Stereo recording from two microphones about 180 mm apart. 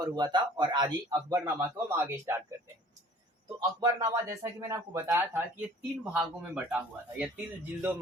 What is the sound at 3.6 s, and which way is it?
Speech, 20° right (ahead or behind).